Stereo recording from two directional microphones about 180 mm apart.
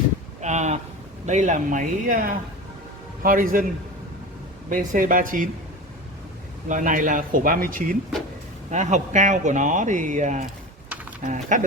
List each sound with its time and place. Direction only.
0.4 s speech: 40° right (ahead or behind)
4.7 s speech: 45° right (ahead or behind)
6.7 s speech: 45° right (ahead or behind)